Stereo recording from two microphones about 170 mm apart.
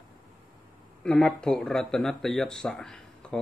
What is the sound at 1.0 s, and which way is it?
Speech, 5° left (ahead or behind).